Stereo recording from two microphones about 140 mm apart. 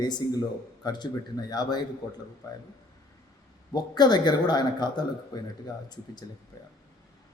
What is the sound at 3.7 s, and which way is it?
A man's voice, 30° left (ahead or behind).